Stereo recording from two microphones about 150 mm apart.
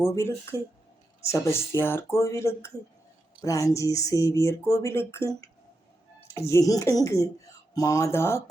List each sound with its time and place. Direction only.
0.1 s speech: 20° left (ahead or behind)